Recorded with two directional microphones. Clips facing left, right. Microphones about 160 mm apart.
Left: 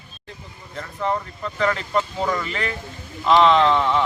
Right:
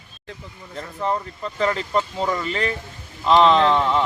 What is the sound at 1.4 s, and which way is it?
Speech, 30° right (ahead or behind).